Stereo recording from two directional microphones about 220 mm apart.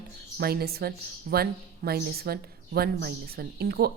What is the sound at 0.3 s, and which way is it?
A woman's voice, 45° right (ahead or behind).